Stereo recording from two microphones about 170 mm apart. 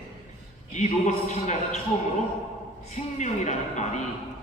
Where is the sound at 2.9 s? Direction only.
45° left (ahead or behind).